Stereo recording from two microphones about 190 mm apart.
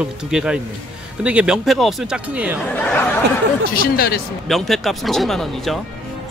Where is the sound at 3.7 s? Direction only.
55° left (ahead or behind).